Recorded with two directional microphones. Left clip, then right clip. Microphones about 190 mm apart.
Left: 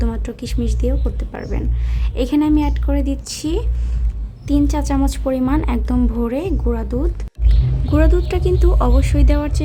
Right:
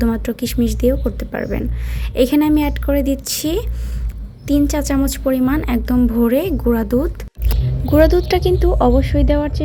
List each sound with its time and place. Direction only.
0.0 s a woman's voice: 15° right (ahead or behind)